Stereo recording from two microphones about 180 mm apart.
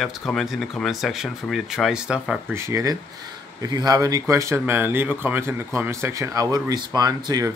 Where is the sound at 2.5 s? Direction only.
15° right (ahead or behind).